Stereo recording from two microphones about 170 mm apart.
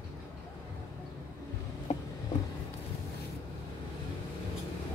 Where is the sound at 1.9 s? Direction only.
40° left (ahead or behind).